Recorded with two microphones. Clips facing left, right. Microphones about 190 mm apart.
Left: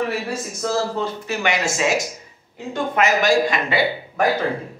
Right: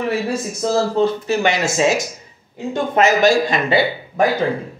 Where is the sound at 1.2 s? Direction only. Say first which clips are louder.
Right 4 dB; 30° right (ahead or behind).